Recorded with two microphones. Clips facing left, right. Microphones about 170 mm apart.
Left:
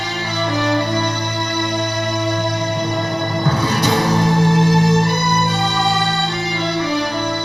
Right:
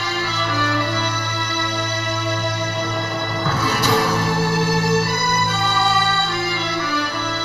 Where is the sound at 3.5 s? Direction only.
20° left (ahead or behind).